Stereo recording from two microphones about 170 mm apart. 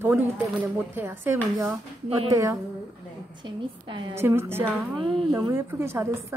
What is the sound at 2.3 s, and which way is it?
Speech, 15° right (ahead or behind).